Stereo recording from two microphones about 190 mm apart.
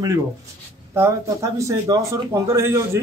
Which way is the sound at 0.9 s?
15° right (ahead or behind).